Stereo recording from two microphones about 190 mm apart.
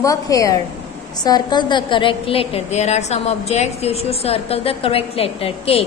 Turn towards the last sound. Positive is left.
turn(degrees=30)  # may be behind; listen again after turning